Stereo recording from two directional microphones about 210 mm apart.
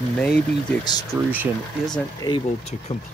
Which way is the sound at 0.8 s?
20° left (ahead or behind).